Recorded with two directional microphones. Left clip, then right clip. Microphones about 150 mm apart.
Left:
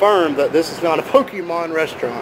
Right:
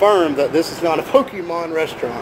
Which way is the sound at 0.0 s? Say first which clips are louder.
Even; centre (ahead or behind).